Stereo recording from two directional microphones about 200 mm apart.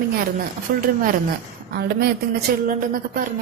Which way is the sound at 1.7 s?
50° right (ahead or behind).